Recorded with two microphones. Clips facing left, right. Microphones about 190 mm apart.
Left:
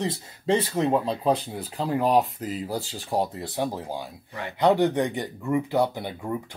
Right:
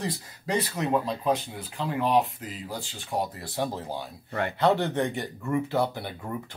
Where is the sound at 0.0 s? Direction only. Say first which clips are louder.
Left 5 dB; 25° left (ahead or behind).